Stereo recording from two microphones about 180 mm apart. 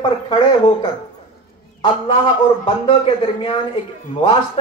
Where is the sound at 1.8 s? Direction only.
30° left (ahead or behind).